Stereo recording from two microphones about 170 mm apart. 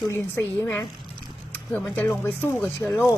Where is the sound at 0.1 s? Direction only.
15° left (ahead or behind).